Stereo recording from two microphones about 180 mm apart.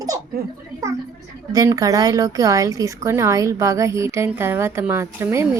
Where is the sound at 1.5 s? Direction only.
20° right (ahead or behind).